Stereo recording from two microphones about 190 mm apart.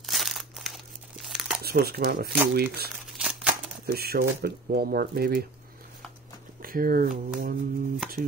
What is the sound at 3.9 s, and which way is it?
Speech, 55° right (ahead or behind).